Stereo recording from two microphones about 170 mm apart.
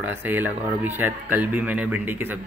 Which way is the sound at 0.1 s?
15° right (ahead or behind).